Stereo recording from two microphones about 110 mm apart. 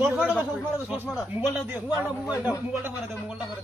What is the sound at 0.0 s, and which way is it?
A man's voice, 15° right (ahead or behind).